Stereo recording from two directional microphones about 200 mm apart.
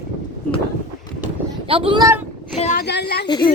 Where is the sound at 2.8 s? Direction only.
55° left (ahead or behind).